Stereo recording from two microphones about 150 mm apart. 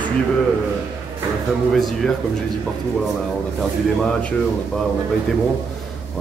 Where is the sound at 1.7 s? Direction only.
Centre (ahead or behind).